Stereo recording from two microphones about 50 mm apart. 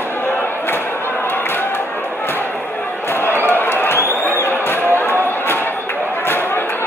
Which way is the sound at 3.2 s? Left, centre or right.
Left.